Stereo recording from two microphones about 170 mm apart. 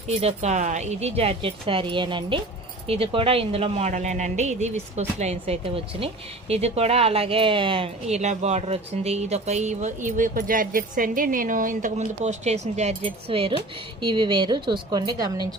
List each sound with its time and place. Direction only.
0.2 s a woman's voice: 40° right (ahead or behind); by 15.4 s 25° right (ahead or behind)